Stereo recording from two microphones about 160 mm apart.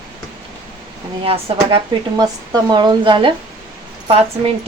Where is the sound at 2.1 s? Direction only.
25° right (ahead or behind).